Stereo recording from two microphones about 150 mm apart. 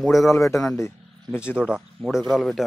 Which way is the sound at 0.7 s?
20° left (ahead or behind).